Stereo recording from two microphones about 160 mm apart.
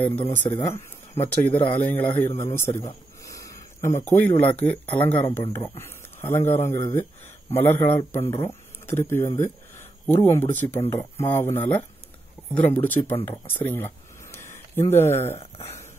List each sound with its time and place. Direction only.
0.5 s speech: 20° left (ahead or behind)
1.2 s speech: 10° left (ahead or behind)
13.5 s a sound: 15° left (ahead or behind)
15.3 s speech: 40° left (ahead or behind)